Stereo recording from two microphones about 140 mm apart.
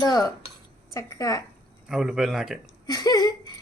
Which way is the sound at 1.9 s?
5° right (ahead or behind).